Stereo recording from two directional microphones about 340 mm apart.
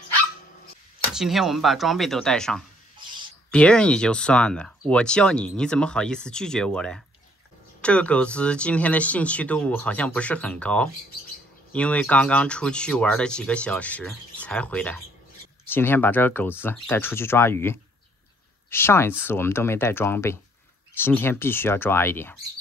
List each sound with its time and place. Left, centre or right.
1.1 s speech: centre